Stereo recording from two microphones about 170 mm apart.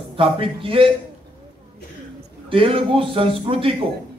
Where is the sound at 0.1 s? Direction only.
30° right (ahead or behind).